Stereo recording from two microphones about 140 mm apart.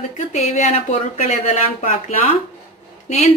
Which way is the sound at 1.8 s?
80° left.